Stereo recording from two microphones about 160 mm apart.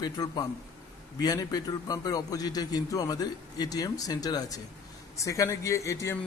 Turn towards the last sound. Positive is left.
turn(degrees=20)  # may be behind; listen again after turning